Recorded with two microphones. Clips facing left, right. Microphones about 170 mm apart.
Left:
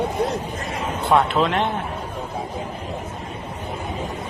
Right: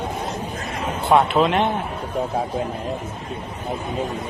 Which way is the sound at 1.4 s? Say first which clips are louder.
Right 2 dB; centre (ahead or behind).